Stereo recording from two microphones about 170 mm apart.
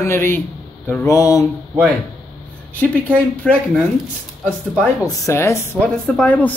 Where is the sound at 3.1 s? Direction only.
10° left (ahead or behind).